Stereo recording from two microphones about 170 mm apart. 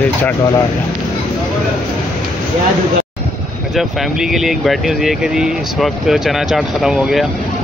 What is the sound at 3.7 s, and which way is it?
Speech, centre (ahead or behind).